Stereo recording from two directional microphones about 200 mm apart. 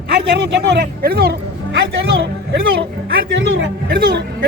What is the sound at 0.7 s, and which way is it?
Speech, 55° right (ahead or behind).